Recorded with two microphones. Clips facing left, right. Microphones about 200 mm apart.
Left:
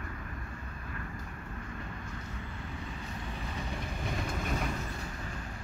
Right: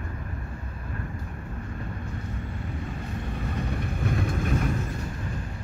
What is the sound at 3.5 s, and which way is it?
Train, 60° right (ahead or behind).